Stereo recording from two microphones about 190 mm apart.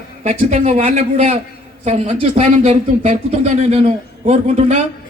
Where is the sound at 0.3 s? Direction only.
35° right (ahead or behind).